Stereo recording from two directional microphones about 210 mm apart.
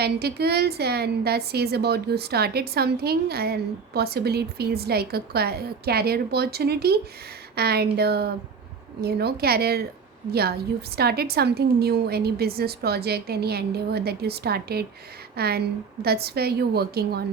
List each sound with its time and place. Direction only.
0.0 s a woman's voice: 50° right (ahead or behind)
10.9 s a woman's voice: 50° right (ahead or behind)